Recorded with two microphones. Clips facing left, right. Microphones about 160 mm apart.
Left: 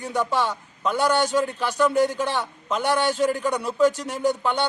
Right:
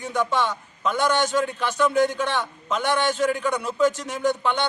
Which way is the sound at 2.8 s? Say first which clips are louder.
Left 1 dB; 35° left (ahead or behind).